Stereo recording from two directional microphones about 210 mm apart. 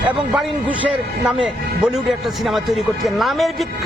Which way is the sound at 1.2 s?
5° right (ahead or behind).